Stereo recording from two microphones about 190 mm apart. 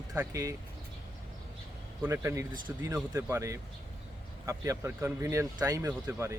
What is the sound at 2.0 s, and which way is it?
Speech, 15° right (ahead or behind).